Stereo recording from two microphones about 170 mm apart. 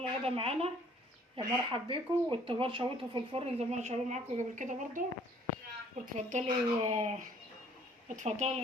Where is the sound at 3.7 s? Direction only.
40° right (ahead or behind).